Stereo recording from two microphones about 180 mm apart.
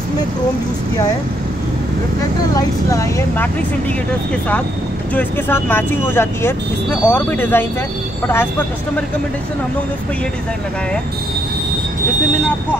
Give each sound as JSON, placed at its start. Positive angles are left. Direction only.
{"t": 2.5, "sound": "speech", "side_deg": 20}
{"t": 5.1, "sound": "speech", "side_deg": 10}